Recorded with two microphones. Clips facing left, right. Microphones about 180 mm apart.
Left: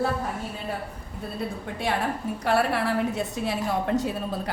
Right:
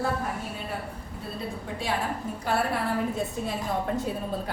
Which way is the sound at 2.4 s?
70° left (ahead or behind).